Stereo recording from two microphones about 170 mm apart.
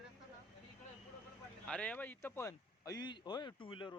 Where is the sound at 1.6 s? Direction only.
5° left (ahead or behind).